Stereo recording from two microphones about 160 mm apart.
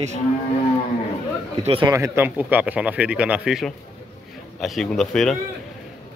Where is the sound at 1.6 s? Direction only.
35° right (ahead or behind).